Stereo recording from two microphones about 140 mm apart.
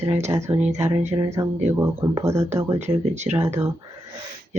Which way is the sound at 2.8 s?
55° right (ahead or behind).